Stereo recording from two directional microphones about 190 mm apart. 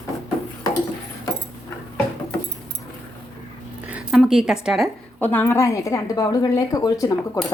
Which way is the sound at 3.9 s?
5° right (ahead or behind).